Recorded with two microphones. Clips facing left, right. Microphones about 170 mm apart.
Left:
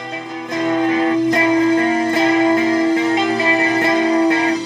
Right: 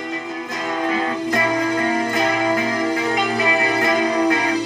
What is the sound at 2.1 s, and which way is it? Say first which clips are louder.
Music: left 6 dB; 30° left (ahead or behind).